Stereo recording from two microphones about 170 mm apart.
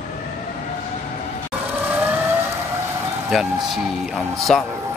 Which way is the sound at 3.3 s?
Centre (ahead or behind).